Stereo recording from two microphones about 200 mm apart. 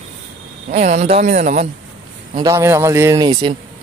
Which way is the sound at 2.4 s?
15° right (ahead or behind).